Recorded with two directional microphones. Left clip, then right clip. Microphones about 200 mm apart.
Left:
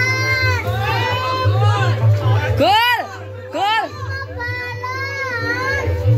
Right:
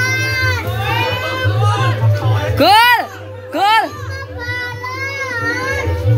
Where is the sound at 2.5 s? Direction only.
10° right (ahead or behind).